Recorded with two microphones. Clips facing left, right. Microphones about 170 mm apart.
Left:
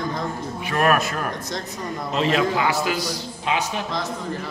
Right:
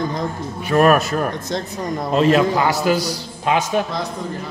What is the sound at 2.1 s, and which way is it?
A man's voice, 45° right (ahead or behind).